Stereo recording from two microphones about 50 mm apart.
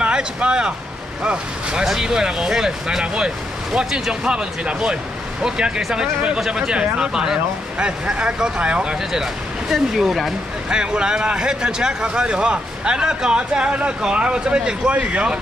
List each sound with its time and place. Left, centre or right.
0.0 s speech: centre
1.9 s speech: centre
9.2 s speech: centre
10.7 s speech: centre